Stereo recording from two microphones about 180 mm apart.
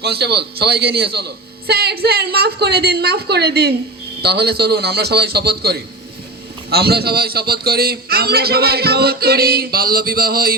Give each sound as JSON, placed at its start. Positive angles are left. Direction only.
{"t": 0.0, "sound": "a man's voice", "side_deg": -65}